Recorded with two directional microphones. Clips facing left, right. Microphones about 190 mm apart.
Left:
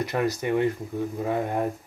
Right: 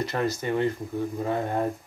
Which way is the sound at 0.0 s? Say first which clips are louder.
Left 1 dB; 15° left (ahead or behind).